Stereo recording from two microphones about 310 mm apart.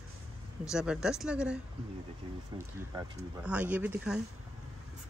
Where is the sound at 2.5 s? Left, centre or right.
Centre.